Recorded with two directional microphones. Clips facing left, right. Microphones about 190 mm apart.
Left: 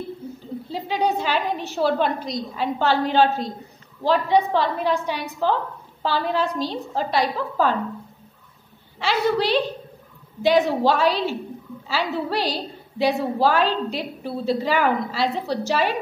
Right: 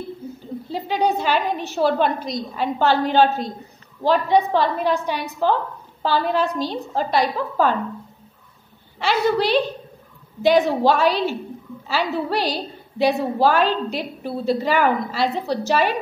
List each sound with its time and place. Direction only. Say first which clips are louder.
0.7 s a woman's voice: right 2 dB; 50° right (ahead or behind)
9.0 s a woman's voice: right 2 dB; 50° right (ahead or behind)